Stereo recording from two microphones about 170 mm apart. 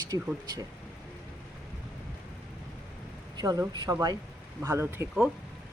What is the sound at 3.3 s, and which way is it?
Speech, 20° right (ahead or behind).